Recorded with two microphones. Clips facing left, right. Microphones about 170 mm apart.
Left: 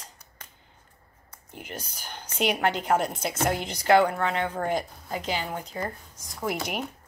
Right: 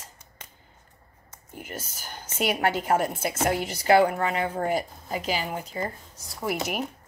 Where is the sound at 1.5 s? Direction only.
45° right (ahead or behind).